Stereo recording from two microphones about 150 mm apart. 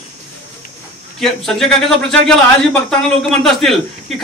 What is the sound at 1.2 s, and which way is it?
A man's voice, 5° left (ahead or behind).